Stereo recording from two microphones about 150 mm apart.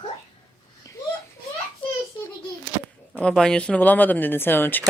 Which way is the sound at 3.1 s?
5° left (ahead or behind).